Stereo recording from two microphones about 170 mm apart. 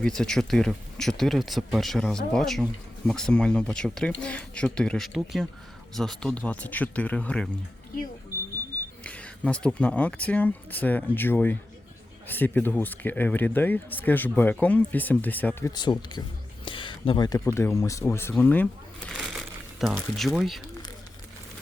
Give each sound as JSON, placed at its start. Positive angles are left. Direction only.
{"t": 0.0, "sound": "speech", "side_deg": 5}
{"t": 9.0, "sound": "speech", "side_deg": 10}
{"t": 15.7, "sound": "speech", "side_deg": 25}
{"t": 19.1, "sound": "crumpling", "side_deg": 0}
{"t": 20.1, "sound": "speech", "side_deg": 0}